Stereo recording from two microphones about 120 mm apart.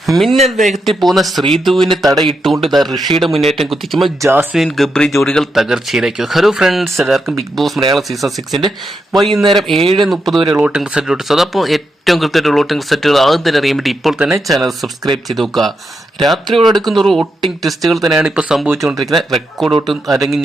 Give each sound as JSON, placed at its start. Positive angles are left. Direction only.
{"t": 0.0, "sound": "speech", "side_deg": 0}
{"t": 0.3, "sound": "speech", "side_deg": -70}
{"t": 0.7, "sound": "speech", "side_deg": 0}
{"t": 4.2, "sound": "speech", "side_deg": -20}
{"t": 4.5, "sound": "speech", "side_deg": 0}